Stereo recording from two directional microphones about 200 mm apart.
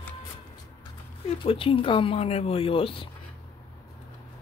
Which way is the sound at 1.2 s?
25° left (ahead or behind).